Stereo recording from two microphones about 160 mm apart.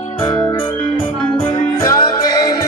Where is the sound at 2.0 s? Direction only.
25° left (ahead or behind).